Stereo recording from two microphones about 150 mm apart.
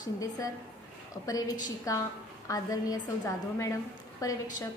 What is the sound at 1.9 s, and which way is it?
A woman's voice, 20° left (ahead or behind).